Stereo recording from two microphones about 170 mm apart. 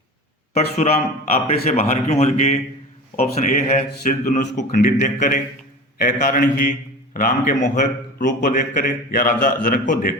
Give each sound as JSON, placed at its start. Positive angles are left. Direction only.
{"t": 0.5, "sound": "a man's voice", "side_deg": 40}